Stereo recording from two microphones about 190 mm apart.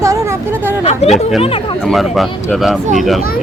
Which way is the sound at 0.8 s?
35° left (ahead or behind).